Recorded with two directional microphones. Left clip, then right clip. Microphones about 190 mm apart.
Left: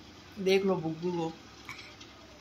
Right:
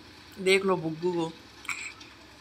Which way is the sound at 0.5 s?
15° right (ahead or behind).